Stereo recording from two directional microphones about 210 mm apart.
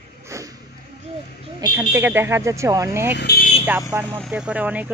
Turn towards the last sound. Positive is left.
turn(degrees=-5)  # may be behind; listen again after turning